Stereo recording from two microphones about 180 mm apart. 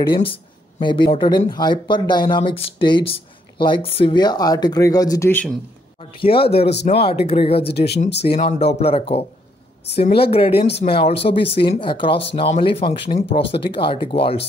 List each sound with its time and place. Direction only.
0.0 s speech: 30° left (ahead or behind); by 5.5 s 10° left (ahead or behind)
5.9 s speech: 30° left (ahead or behind)
6.7 s speech: 70° left (ahead or behind)
7.0 s speech: 35° left (ahead or behind)
7.7 s speech: 65° left (ahead or behind)
8.2 s speech: 40° left (ahead or behind)